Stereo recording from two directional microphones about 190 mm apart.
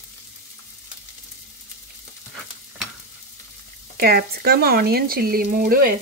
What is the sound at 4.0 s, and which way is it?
Speech, 55° right (ahead or behind).